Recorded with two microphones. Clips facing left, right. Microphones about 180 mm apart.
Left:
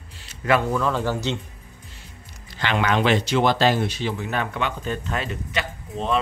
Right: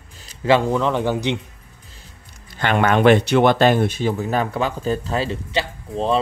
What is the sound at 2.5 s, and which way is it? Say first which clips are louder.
Speech: right 5 dB; 50° right (ahead or behind).